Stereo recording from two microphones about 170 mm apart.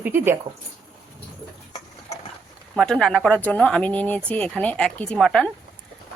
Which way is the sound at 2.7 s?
5° left (ahead or behind).